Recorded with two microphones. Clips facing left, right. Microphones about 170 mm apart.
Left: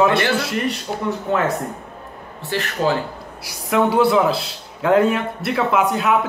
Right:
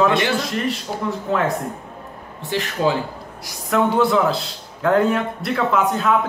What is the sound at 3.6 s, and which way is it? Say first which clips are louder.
A man's voice: left 1 dB; 10° left (ahead or behind).